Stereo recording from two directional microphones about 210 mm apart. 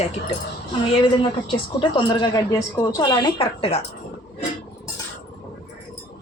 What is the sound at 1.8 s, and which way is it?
A woman's voice, 20° left (ahead or behind).